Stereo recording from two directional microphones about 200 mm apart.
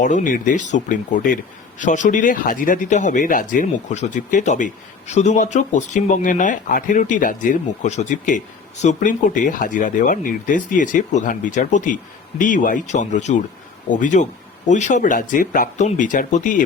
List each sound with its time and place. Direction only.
0.0 s speech: 40° left (ahead or behind)